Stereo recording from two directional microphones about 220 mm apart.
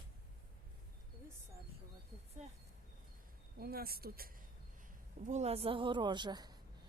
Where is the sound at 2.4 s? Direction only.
30° right (ahead or behind).